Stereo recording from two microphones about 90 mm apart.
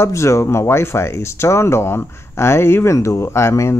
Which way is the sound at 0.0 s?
35° left (ahead or behind).